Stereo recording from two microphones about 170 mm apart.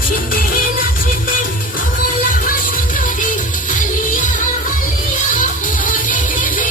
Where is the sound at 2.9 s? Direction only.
50° left (ahead or behind).